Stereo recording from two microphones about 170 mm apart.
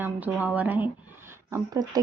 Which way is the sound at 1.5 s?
20° right (ahead or behind).